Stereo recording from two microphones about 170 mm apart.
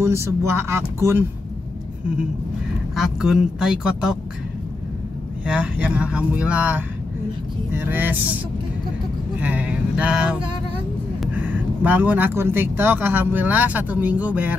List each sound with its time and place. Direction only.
0.0 s speech: 15° right (ahead or behind)
3.0 s speech: 5° right (ahead or behind)
5.5 s speech: 5° right (ahead or behind)
9.4 s speech: 10° right (ahead or behind)